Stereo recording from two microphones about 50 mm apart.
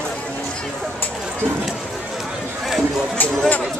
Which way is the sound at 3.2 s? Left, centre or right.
Left.